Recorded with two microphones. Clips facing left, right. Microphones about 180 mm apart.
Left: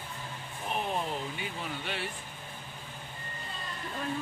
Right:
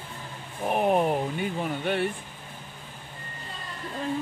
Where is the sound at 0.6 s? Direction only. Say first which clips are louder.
Right 10 dB; 60° right (ahead or behind).